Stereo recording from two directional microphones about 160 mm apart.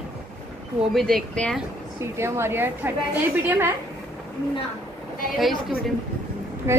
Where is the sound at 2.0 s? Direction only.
15° right (ahead or behind).